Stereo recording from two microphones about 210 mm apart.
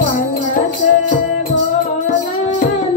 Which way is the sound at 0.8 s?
40° left (ahead or behind).